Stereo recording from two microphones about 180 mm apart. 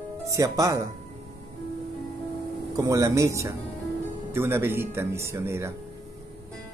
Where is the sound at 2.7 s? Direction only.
20° right (ahead or behind).